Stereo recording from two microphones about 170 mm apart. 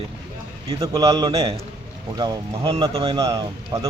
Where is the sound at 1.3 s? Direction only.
35° right (ahead or behind).